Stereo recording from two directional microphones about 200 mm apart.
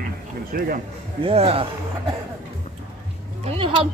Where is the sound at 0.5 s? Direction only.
45° right (ahead or behind).